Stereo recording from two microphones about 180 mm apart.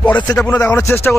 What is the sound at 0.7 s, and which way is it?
Speech, 15° left (ahead or behind).